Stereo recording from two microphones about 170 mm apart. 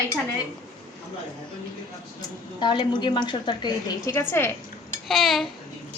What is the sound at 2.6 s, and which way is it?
A woman's voice, 25° left (ahead or behind).